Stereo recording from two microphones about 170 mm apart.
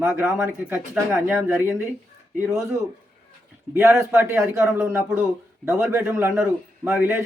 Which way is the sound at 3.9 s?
15° right (ahead or behind).